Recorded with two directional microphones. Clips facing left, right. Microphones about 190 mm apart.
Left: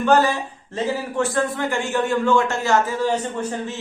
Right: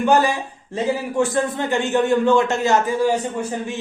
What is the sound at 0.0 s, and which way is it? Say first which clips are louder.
A man's voice: even; 15° right (ahead or behind).